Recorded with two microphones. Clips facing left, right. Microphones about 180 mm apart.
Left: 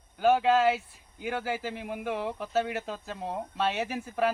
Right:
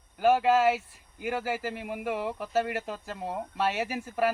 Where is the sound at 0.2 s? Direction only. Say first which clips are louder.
Even; 10° right (ahead or behind).